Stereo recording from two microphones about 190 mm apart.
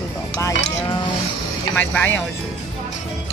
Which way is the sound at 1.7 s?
10° left (ahead or behind).